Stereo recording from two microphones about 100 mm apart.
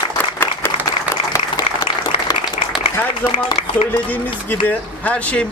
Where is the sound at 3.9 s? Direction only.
15° left (ahead or behind).